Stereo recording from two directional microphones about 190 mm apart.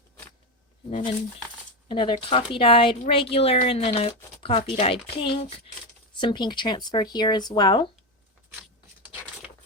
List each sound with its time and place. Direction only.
0.9 s speech: 35° left (ahead or behind)